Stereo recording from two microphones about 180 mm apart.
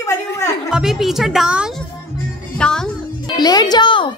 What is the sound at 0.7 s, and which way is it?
Speech, 5° right (ahead or behind).